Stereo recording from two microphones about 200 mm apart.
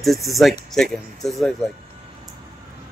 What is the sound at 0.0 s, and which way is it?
Speech, centre (ahead or behind).